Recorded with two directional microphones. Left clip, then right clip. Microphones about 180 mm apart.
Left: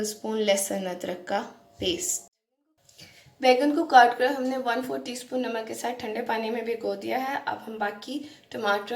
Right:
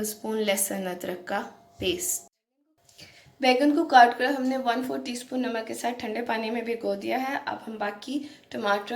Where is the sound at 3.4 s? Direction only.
15° right (ahead or behind).